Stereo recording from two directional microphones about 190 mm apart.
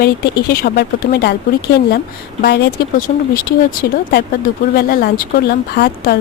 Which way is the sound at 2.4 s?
60° left (ahead or behind).